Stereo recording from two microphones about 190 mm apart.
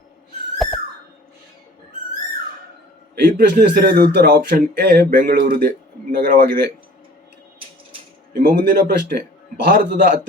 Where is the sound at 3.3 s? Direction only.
55° right (ahead or behind).